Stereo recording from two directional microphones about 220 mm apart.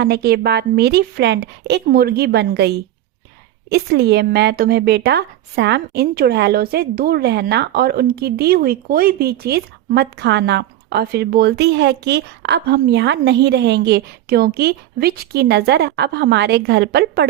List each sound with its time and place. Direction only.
0.0 s speech: 45° right (ahead or behind)